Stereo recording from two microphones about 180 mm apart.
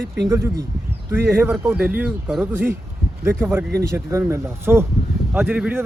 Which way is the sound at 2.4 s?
10° right (ahead or behind).